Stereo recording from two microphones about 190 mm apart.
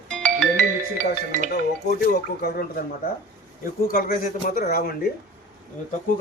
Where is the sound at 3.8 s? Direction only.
50° left (ahead or behind).